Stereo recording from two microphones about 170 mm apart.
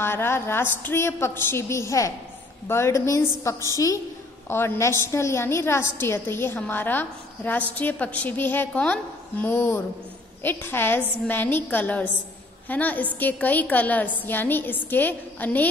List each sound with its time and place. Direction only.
0.0 s a woman's voice: 15° left (ahead or behind)